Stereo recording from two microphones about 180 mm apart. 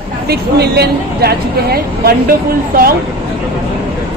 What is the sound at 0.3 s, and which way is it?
Speech, 60° right (ahead or behind).